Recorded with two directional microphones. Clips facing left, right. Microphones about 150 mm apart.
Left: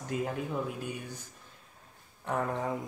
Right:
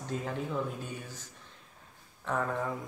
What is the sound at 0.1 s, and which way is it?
Speech, 10° left (ahead or behind).